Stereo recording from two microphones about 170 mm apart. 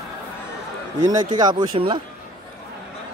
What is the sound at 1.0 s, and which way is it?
Speech, 25° right (ahead or behind).